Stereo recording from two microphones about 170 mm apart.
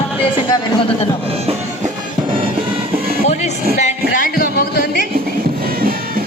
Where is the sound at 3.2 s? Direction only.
40° left (ahead or behind).